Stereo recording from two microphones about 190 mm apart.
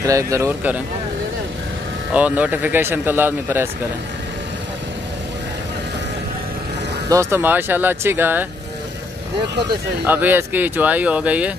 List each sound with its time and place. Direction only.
0.0 s speech: 15° right (ahead or behind)
2.1 s speech: 5° right (ahead or behind)
7.1 s speech: 15° right (ahead or behind)
10.0 s speech: 10° right (ahead or behind)